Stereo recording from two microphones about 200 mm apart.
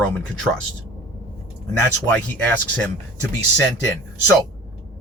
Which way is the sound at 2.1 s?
5° left (ahead or behind).